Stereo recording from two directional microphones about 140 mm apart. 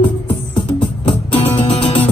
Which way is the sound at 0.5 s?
35° left (ahead or behind).